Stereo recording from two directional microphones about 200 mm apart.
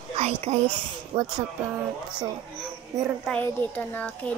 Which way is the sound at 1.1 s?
20° right (ahead or behind).